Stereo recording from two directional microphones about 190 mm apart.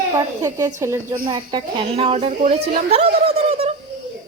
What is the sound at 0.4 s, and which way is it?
Speech, 20° right (ahead or behind).